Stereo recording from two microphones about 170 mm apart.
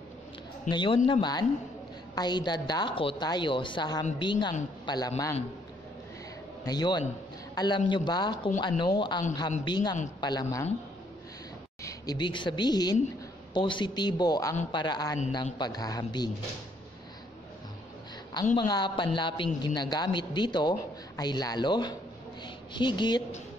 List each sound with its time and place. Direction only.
0.7 s a man's voice: 30° left (ahead or behind)
6.6 s a man's voice: 25° left (ahead or behind)
11.8 s a woman's voice: 25° left (ahead or behind)
18.6 s a man's voice: 25° left (ahead or behind)